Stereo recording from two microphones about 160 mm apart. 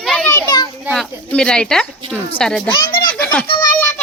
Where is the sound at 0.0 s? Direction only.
5° left (ahead or behind).